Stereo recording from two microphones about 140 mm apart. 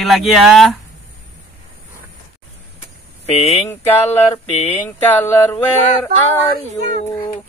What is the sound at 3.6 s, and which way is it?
Mantra, 15° left (ahead or behind).